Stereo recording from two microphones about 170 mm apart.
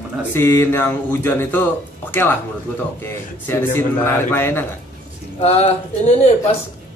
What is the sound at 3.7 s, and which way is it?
Speech, 15° left (ahead or behind).